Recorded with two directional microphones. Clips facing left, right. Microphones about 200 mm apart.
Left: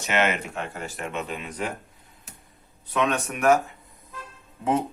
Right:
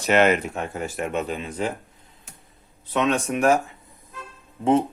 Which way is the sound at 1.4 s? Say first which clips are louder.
Right 4 dB; 25° right (ahead or behind).